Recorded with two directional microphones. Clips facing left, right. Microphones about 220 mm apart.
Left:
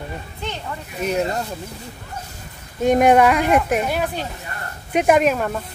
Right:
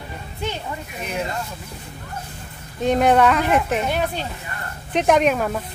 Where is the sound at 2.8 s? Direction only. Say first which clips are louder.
Left 2 dB; 10° left (ahead or behind).